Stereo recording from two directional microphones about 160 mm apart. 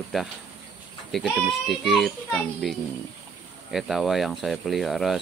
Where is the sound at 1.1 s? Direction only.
Centre (ahead or behind).